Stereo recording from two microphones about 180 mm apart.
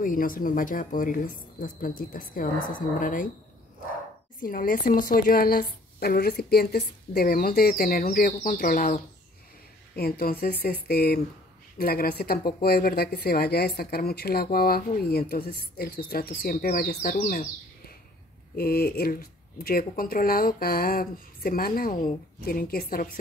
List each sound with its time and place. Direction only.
0.0 s a woman's voice: 50° left (ahead or behind)
4.4 s a woman's voice: 50° left (ahead or behind)